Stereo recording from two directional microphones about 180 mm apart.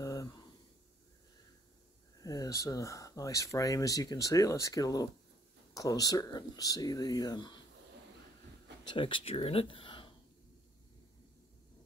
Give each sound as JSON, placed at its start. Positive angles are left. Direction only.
{"t": 0.0, "sound": "a sound", "side_deg": 20}
{"t": 2.2, "sound": "speech", "side_deg": 20}
{"t": 8.8, "sound": "speech", "side_deg": 25}